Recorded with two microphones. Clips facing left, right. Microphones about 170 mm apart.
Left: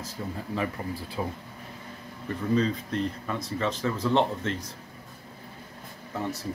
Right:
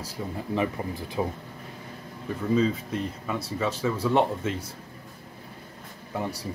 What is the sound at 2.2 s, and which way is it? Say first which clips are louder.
Speech: right 2 dB; 5° right (ahead or behind).